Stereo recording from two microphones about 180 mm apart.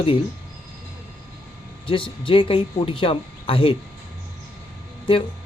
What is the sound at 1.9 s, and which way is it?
Speech, 30° left (ahead or behind).